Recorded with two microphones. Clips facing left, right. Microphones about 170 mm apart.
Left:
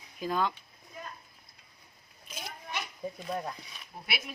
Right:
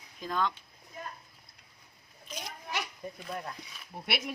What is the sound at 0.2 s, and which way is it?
Speech, 10° left (ahead or behind).